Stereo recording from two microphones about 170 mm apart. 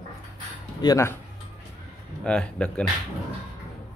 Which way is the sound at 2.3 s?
5° left (ahead or behind).